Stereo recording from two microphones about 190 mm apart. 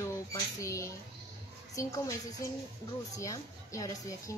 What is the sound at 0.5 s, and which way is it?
A woman's voice, 15° left (ahead or behind).